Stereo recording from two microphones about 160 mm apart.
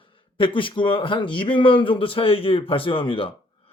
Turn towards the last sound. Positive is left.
turn(degrees=35)  # may be behind; listen again after turning